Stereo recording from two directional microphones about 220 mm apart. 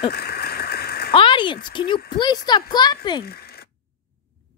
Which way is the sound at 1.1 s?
25° left (ahead or behind).